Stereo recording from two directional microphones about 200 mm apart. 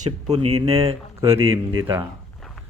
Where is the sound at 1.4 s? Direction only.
80° right.